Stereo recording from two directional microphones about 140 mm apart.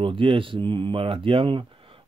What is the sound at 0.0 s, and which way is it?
Speech, 35° right (ahead or behind).